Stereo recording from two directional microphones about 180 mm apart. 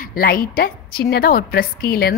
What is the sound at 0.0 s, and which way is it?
A woman's voice, 55° left (ahead or behind).